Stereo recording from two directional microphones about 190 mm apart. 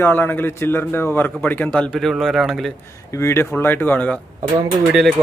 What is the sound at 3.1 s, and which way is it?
A man's voice, 15° left (ahead or behind).